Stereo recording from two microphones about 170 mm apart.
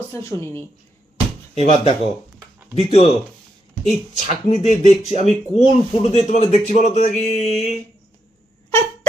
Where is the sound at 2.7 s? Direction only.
35° left (ahead or behind).